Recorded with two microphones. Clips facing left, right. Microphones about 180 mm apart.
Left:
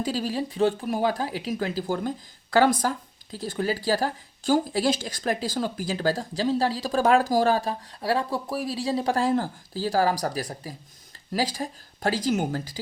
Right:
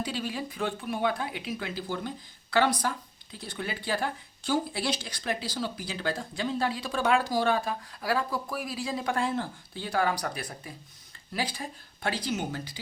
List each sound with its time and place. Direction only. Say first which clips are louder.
0.0 s speech: left 6 dB; 35° left (ahead or behind)